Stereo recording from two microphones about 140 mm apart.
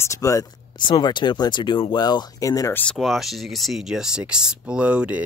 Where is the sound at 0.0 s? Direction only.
20° left (ahead or behind).